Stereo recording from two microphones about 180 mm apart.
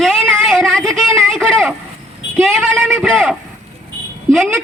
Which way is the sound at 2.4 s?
Centre (ahead or behind).